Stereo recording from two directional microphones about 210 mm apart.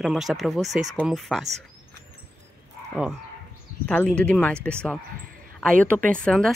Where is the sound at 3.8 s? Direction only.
5° left (ahead or behind).